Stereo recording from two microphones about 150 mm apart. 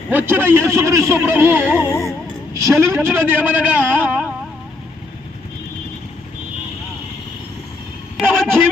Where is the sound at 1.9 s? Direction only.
20° left (ahead or behind).